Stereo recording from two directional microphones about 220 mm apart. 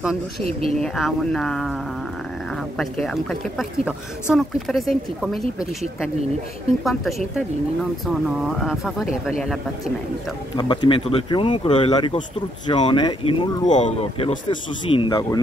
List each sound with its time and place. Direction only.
0.5 s speech: 40° left (ahead or behind)
0.8 s speech: centre (ahead or behind)
2.8 s speech: centre (ahead or behind)
10.5 s speech: 20° left (ahead or behind)
13.7 s speech: 35° left (ahead or behind); by 15.4 s 15° left (ahead or behind)